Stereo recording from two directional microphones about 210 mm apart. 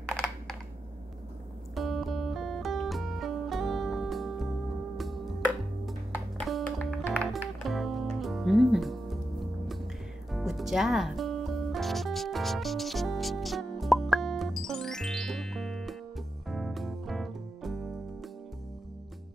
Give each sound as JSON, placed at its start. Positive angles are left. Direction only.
{"t": 0.1, "sound": "computer keyboard", "side_deg": 0}
{"t": 1.8, "sound": "music", "side_deg": 0}
{"t": 5.9, "sound": "music", "side_deg": 0}